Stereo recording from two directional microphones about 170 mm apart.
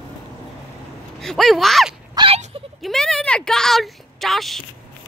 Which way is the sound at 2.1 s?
30° right (ahead or behind).